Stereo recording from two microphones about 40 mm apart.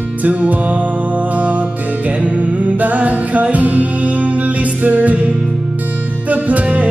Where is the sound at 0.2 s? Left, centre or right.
Right.